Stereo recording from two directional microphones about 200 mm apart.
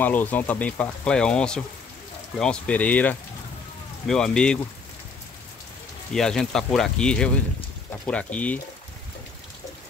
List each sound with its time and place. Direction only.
0.0 s speech: 10° left (ahead or behind)
6.1 s speech: 5° left (ahead or behind)